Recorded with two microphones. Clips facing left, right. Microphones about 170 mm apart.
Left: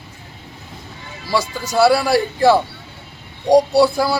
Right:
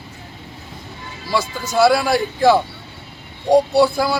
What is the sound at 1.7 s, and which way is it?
Speech, 10° left (ahead or behind).